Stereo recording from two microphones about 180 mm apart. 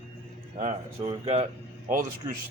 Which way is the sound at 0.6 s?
40° right (ahead or behind).